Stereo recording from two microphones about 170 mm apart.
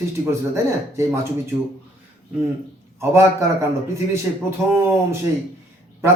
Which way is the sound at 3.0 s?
15° right (ahead or behind).